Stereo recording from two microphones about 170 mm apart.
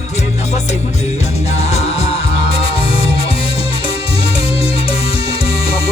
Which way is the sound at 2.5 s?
35° left (ahead or behind).